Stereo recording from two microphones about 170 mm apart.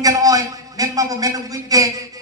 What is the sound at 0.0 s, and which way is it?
A man's voice, 20° right (ahead or behind).